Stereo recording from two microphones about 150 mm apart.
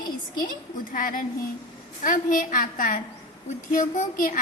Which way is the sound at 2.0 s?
65° left (ahead or behind).